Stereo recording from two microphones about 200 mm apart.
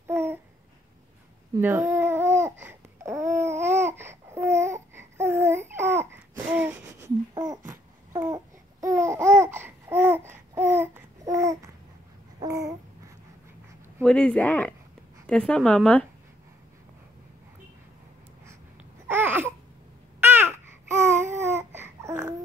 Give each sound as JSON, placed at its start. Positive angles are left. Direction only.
{"t": 0.0, "sound": "babbling", "side_deg": -10}
{"t": 1.5, "sound": "babbling", "side_deg": -10}
{"t": 5.7, "sound": "a sound", "side_deg": -10}
{"t": 7.3, "sound": "babbling", "side_deg": -20}
{"t": 8.8, "sound": "laughter", "side_deg": -15}
{"t": 12.4, "sound": "babbling", "side_deg": -15}
{"t": 14.0, "sound": "a sound", "side_deg": 5}
{"t": 15.2, "sound": "speech", "side_deg": 5}
{"t": 19.0, "sound": "babbling", "side_deg": -10}